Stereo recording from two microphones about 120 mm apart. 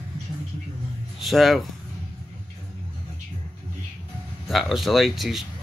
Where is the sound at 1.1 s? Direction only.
Centre (ahead or behind).